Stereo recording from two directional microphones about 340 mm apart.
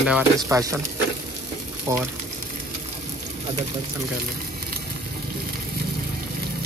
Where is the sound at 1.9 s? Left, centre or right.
Centre.